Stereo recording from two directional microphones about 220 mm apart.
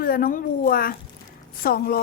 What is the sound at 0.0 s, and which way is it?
A woman's voice, 40° left (ahead or behind).